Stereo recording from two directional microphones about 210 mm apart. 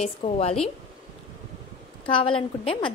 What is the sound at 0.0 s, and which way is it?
Speech, 30° left (ahead or behind).